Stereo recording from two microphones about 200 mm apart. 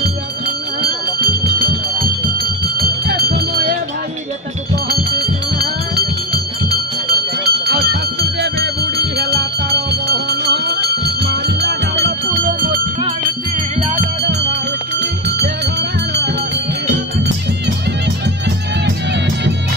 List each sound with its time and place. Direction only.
2.8 s a sound: 50° right (ahead or behind)
5.2 s music: 50° right (ahead or behind)
7.4 s music: 50° right (ahead or behind)
15.0 s music: 60° right (ahead or behind)